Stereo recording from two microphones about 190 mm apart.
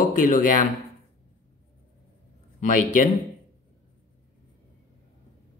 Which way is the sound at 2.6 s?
45° left (ahead or behind).